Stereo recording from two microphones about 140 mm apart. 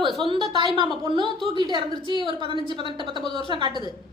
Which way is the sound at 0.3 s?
35° right (ahead or behind).